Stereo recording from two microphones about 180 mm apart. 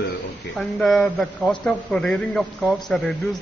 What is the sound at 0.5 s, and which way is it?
A man's voice, centre (ahead or behind).